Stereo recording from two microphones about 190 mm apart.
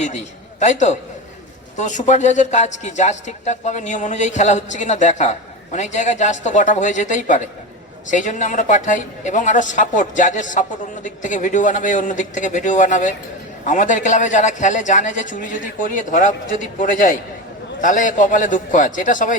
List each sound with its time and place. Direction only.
0.6 s a man's voice: 40° left (ahead or behind)